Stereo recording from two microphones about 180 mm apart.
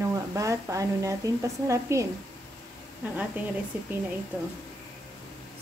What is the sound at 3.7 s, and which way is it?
Speech, 10° right (ahead or behind).